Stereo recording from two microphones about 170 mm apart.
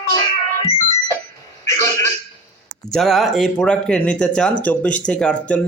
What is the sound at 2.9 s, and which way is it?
A man's voice, centre (ahead or behind).